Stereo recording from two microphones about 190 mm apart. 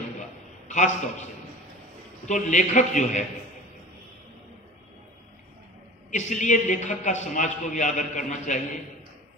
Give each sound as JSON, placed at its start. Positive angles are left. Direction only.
{"t": 0.7, "sound": "a man's voice", "side_deg": 40}
{"t": 2.2, "sound": "a man's voice", "side_deg": 40}
{"t": 6.1, "sound": "a man's voice", "side_deg": 40}